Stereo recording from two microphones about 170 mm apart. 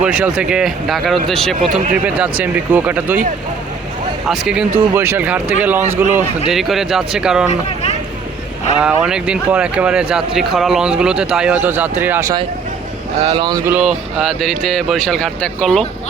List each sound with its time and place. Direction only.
0.0 s speech: 5° right (ahead or behind)
2.4 s speech: 10° right (ahead or behind)
4.3 s speech: 5° right (ahead or behind)
6.5 s speech: centre (ahead or behind)
8.8 s speech: 5° right (ahead or behind)
13.2 s speech: 30° right (ahead or behind)
13.7 s speech: 5° right (ahead or behind)